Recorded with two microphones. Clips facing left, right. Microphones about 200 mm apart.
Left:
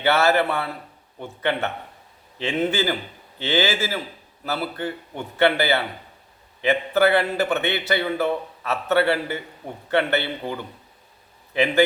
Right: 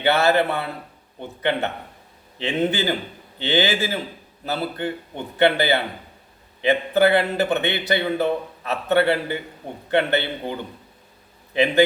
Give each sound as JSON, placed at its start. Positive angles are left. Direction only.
{"t": 0.0, "sound": "a man's voice", "side_deg": -15}